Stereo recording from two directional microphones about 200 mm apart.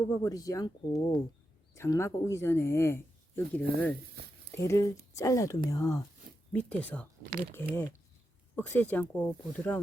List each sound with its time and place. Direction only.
0.0 s speech: 20° left (ahead or behind)
1.7 s speech: 15° left (ahead or behind)